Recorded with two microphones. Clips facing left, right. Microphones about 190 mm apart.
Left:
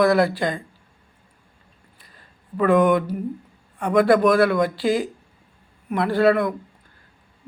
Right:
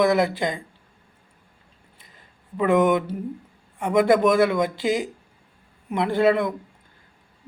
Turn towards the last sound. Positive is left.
turn(degrees=-20)  # may be behind; listen again after turning